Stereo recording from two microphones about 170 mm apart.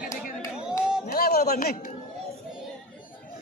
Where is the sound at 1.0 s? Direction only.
60° left (ahead or behind).